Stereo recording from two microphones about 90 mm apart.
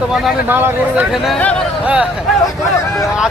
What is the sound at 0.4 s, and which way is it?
Speech, 20° right (ahead or behind).